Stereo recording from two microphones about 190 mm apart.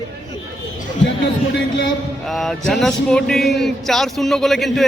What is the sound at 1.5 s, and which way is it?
Speech, 80° left.